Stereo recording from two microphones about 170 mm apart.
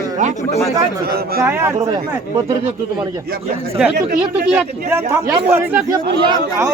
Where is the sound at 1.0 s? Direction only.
65° right (ahead or behind).